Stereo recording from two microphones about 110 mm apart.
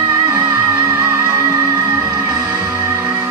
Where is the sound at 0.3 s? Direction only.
20° right (ahead or behind).